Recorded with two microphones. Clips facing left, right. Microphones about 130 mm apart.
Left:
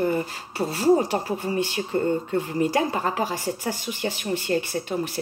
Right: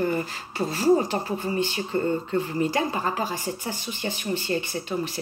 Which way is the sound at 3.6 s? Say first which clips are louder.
Left 4 dB; 70° left (ahead or behind).